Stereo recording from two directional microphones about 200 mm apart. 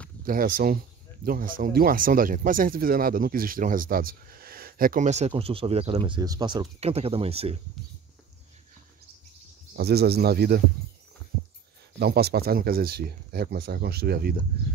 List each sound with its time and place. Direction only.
0.2 s speech: 45° right (ahead or behind); by 7.6 s 30° right (ahead or behind)
9.8 s speech: 50° right (ahead or behind)
12.0 s speech: 50° right (ahead or behind)